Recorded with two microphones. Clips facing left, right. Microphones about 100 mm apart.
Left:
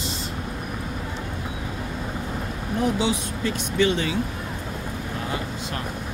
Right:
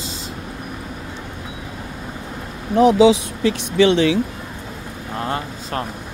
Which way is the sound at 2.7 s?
85° right.